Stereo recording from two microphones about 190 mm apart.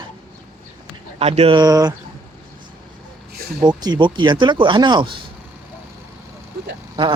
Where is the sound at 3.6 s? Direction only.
20° right (ahead or behind).